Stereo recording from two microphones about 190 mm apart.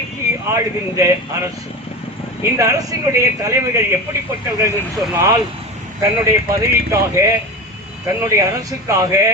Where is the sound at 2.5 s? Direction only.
15° right (ahead or behind).